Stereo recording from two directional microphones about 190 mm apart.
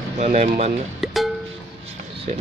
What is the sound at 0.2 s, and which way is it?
Speech, 40° right (ahead or behind).